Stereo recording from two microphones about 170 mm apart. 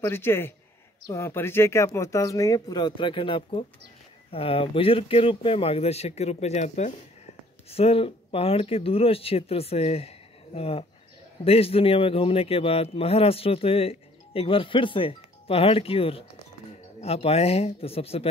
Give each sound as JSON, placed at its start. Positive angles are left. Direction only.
{"t": 0.0, "sound": "a man's voice", "side_deg": 15}